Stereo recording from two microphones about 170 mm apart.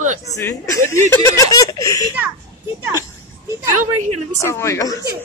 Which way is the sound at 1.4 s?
20° left (ahead or behind).